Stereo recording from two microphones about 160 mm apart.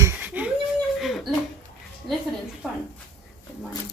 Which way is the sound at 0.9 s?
Centre (ahead or behind).